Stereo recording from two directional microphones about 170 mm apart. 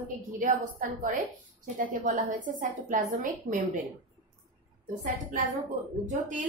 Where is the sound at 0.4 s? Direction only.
50° right (ahead or behind).